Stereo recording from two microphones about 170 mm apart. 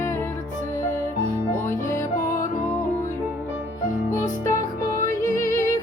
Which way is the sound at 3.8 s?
50° left (ahead or behind).